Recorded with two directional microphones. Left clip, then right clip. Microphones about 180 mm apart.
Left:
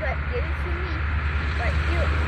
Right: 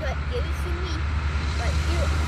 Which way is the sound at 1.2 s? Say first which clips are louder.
Left 4 dB; 90° right.